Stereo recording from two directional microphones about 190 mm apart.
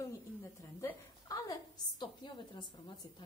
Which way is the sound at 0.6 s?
15° left (ahead or behind).